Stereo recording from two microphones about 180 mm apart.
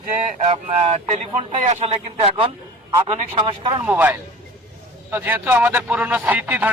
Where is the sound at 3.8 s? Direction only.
10° right (ahead or behind).